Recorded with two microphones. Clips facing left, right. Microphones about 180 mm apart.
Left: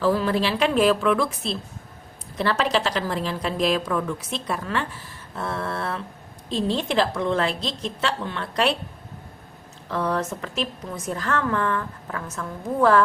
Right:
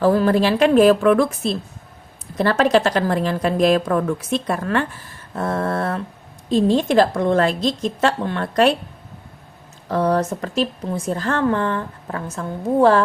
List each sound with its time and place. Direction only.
0.0 s a woman's voice: 50° right (ahead or behind)
9.9 s a woman's voice: 40° right (ahead or behind)